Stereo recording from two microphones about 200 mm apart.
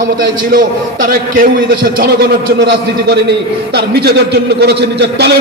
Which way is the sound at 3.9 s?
50° right (ahead or behind).